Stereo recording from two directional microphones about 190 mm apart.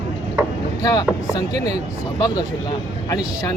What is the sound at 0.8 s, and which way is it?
Speech, 20° left (ahead or behind).